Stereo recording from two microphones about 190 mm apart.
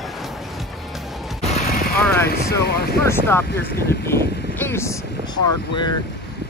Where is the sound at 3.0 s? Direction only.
10° left (ahead or behind).